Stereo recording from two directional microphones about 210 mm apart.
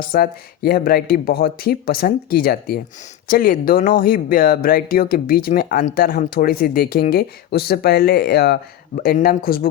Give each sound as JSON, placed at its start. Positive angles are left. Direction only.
{"t": 0.1, "sound": "speech", "side_deg": 45}